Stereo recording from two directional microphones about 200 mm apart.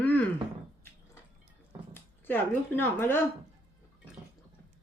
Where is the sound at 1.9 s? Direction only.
10° left (ahead or behind).